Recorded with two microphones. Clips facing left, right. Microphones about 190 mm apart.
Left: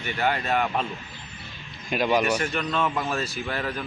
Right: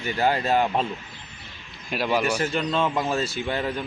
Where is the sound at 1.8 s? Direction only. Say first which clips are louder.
Left 1 dB; centre (ahead or behind).